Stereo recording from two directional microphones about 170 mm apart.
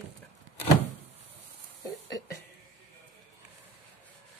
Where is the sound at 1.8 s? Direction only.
20° left (ahead or behind).